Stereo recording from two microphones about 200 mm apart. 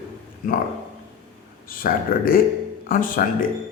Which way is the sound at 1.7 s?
45° left (ahead or behind).